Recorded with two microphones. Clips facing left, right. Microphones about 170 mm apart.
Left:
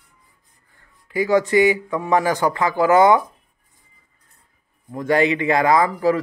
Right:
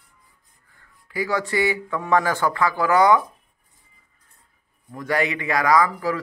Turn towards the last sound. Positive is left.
turn(degrees=25)  # may be behind; listen again after turning